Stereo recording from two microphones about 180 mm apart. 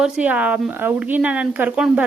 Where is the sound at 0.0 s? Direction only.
5° right (ahead or behind).